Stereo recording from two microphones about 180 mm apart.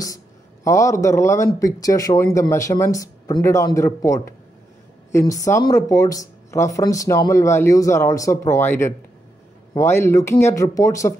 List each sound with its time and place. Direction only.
0.7 s speech: 15° left (ahead or behind)
5.3 s speech: 20° left (ahead or behind)